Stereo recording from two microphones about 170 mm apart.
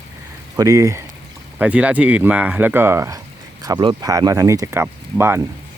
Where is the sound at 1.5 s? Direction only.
10° right (ahead or behind).